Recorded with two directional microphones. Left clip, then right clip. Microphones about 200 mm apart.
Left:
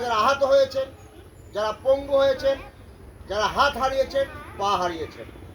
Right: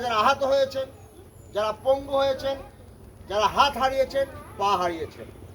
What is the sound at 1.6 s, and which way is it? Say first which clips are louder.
Speech: left 2 dB; 20° right (ahead or behind).